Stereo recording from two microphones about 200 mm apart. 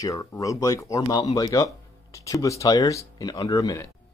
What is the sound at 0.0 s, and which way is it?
Speech, 15° left (ahead or behind).